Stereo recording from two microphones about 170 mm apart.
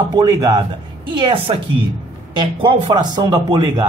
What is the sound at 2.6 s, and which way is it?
Speech, 25° right (ahead or behind).